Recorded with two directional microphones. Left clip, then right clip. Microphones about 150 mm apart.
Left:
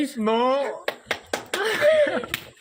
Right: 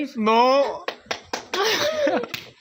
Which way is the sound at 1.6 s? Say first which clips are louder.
Left 3 dB; 35° right (ahead or behind).